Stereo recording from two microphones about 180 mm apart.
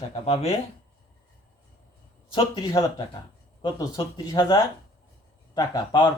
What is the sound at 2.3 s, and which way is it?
Speech, 25° left (ahead or behind).